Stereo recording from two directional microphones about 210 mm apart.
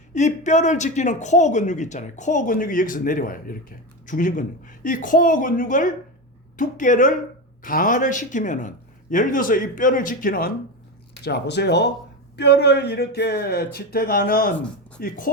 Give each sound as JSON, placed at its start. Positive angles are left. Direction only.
{"t": 0.1, "sound": "speech", "side_deg": 35}
{"t": 11.2, "sound": "speech", "side_deg": 50}